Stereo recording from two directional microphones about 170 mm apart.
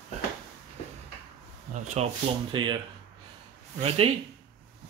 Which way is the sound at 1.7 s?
45° right (ahead or behind).